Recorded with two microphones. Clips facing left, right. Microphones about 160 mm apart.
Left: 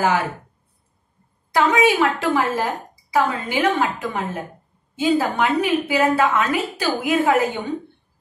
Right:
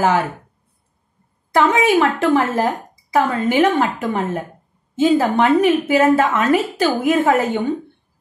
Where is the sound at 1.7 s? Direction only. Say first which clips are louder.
Right 2 dB; 50° right (ahead or behind).